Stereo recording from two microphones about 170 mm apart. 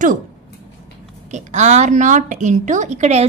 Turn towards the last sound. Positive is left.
turn(degrees=-40)  # may be behind; listen again after turning